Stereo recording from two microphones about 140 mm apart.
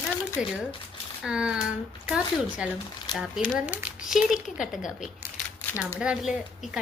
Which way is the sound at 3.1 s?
30° left (ahead or behind).